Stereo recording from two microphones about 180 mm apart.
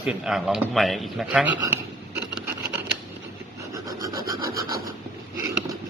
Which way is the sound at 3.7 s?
20° right (ahead or behind).